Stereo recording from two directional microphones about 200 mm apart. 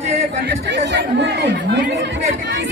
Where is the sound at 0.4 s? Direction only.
60° right (ahead or behind).